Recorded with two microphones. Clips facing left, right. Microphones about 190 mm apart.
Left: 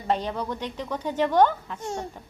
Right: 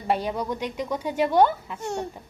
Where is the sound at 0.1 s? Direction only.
10° right (ahead or behind).